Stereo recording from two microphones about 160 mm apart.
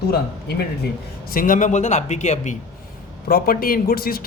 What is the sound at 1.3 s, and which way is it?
A man's voice, 55° left (ahead or behind).